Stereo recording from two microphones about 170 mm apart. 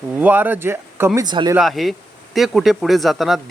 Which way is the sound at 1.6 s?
Centre (ahead or behind).